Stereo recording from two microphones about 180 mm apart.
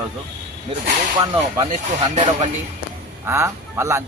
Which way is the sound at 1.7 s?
40° right (ahead or behind).